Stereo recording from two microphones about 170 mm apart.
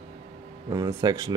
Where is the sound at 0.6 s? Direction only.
25° right (ahead or behind).